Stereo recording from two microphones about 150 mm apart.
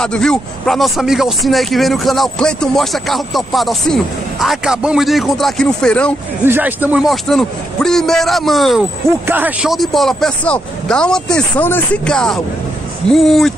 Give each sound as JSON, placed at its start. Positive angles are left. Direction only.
{"t": 0.0, "sound": "speech", "side_deg": 5}
{"t": 6.4, "sound": "speech", "side_deg": -15}
{"t": 9.2, "sound": "speech", "side_deg": -10}